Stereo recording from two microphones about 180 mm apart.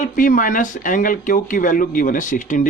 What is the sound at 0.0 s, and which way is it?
A man's voice, 50° left (ahead or behind).